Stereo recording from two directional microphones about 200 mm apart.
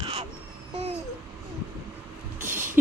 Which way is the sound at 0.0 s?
30° right (ahead or behind).